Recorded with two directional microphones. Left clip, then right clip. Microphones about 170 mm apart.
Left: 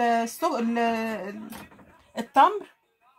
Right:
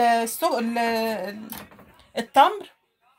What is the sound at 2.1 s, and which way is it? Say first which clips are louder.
Speech: right 2 dB; 25° right (ahead or behind).